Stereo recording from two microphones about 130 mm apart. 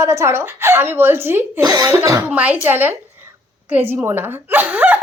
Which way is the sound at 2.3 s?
10° right (ahead or behind).